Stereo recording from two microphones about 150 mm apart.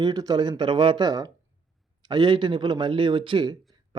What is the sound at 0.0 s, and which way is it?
Speech, 25° right (ahead or behind).